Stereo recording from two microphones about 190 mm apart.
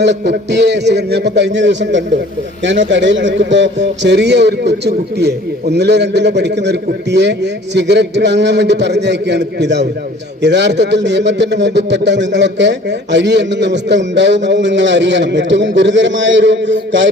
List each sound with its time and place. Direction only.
0.0 s a man's voice: 65° right (ahead or behind)